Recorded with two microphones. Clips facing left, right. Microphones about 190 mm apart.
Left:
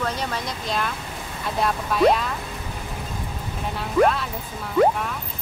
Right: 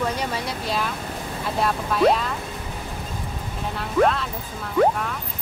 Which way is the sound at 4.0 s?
5° left (ahead or behind).